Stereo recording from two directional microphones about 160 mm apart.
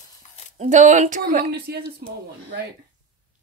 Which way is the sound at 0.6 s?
50° right (ahead or behind).